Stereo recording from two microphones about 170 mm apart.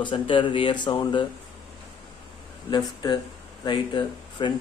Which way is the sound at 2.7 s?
25° left (ahead or behind).